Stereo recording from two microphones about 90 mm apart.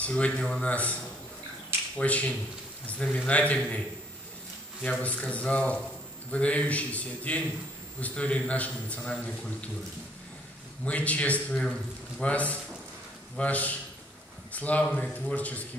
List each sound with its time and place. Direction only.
0.0 s a man's voice: 15° left (ahead or behind)
2.0 s a man's voice: 15° left (ahead or behind)
5.0 s a man's voice: 15° left (ahead or behind)
10.9 s a man's voice: 15° left (ahead or behind)